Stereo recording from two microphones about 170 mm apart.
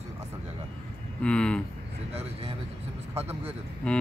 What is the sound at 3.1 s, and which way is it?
Speech, 35° right (ahead or behind).